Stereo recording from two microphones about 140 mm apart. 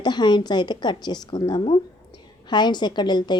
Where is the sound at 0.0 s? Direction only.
30° left (ahead or behind).